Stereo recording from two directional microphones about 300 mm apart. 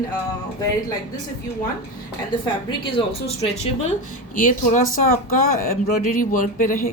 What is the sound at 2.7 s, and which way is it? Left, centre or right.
Speech, centre.